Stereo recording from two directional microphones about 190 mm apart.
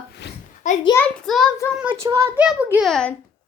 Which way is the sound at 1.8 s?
15° right (ahead or behind).